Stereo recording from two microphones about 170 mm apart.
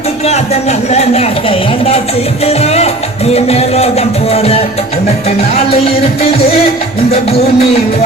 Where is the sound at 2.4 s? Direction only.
35° left (ahead or behind).